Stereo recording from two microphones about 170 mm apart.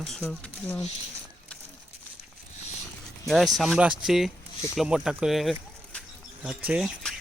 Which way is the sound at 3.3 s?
Centre (ahead or behind).